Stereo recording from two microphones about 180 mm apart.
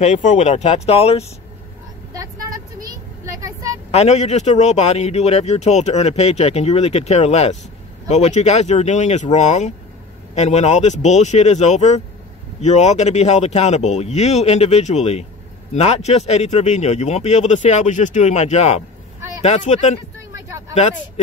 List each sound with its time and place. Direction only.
0.0 s a man's voice: 40° left (ahead or behind)
2.1 s vehicle: 20° right (ahead or behind)
3.9 s a man's voice: 35° left (ahead or behind)